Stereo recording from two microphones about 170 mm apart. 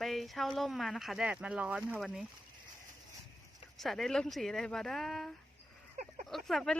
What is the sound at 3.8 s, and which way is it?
A woman's voice, centre (ahead or behind).